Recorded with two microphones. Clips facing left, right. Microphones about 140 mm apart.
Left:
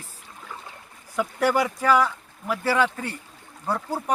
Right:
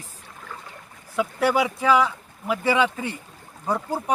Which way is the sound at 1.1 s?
10° right (ahead or behind).